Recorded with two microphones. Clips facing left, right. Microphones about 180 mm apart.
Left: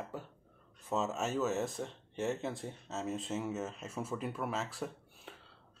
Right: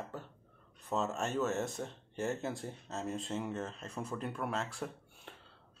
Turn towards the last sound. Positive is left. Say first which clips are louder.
# left 1 dB
turn(degrees=0)  # may be behind; listen again after turning